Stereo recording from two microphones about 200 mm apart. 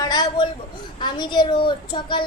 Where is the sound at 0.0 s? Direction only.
20° left (ahead or behind).